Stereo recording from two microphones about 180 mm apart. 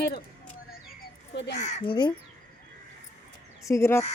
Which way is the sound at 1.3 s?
70° left (ahead or behind).